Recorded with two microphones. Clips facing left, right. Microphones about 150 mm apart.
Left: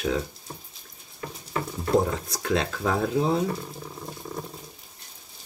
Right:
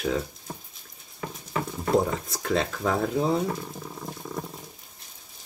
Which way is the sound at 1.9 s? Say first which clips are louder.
Left 1 dB; centre (ahead or behind).